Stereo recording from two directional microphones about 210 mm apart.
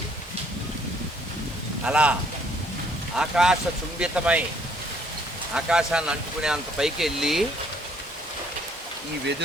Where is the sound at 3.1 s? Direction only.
5° right (ahead or behind).